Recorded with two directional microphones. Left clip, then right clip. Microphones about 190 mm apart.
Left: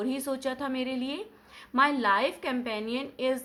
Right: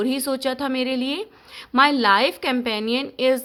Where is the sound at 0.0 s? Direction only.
50° right (ahead or behind).